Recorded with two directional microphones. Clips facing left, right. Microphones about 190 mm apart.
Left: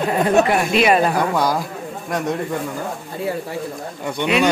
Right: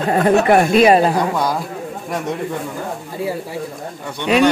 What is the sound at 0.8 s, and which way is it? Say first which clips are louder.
Speech: right 2 dB; 30° right (ahead or behind).